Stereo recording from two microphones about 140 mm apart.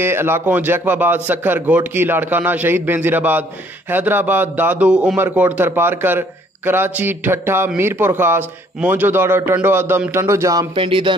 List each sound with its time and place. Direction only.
0.0 s a man's voice: 15° right (ahead or behind)
10.8 s speech: 35° right (ahead or behind)